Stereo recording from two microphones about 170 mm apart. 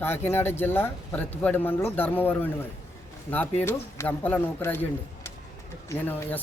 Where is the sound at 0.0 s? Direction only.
15° left (ahead or behind).